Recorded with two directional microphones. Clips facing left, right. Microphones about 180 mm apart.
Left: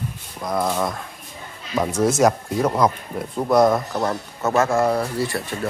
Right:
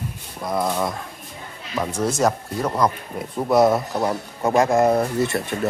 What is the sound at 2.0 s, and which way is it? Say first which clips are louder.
Speech: left 3 dB; 10° left (ahead or behind).